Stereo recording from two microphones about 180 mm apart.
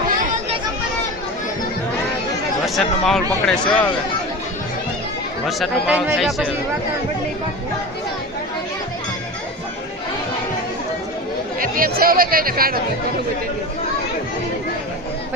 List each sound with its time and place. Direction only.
2.6 s speech: centre (ahead or behind)
5.5 s speech: 5° right (ahead or behind)
11.6 s speech: 55° right (ahead or behind)